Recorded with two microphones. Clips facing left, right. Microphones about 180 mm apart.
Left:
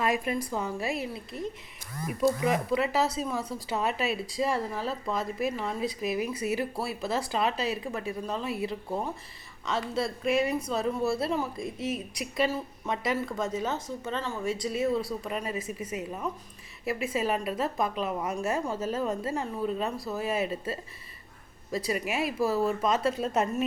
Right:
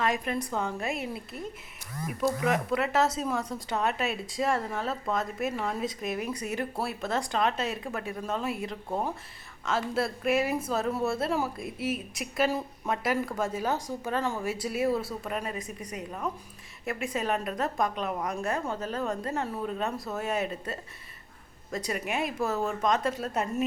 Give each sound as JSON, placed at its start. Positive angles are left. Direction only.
{"t": 0.0, "sound": "a woman's voice", "side_deg": 10}
{"t": 23.0, "sound": "a woman's voice", "side_deg": 25}